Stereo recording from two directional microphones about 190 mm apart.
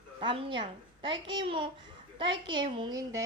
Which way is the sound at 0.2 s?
25° right (ahead or behind).